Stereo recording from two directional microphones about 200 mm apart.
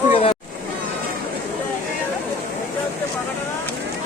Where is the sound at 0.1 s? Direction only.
30° left (ahead or behind).